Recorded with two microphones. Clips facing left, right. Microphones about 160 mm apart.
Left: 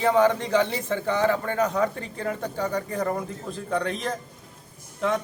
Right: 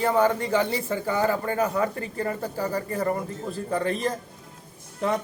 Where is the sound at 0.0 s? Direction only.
5° right (ahead or behind).